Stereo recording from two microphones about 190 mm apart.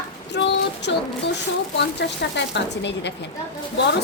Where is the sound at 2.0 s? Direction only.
65° left (ahead or behind).